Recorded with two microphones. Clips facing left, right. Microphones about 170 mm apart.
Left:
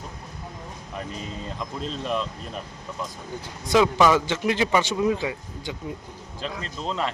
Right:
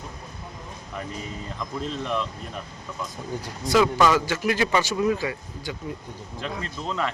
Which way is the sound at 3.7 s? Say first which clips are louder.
Left 1 dB; 15° left (ahead or behind).